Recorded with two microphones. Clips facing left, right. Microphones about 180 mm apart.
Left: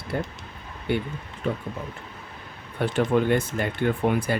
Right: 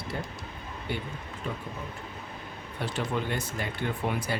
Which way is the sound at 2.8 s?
55° left (ahead or behind).